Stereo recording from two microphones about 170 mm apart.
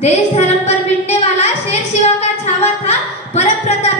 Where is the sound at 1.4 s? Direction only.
40° left (ahead or behind).